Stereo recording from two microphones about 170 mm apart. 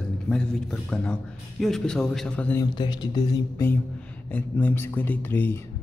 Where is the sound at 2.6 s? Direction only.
25° left (ahead or behind).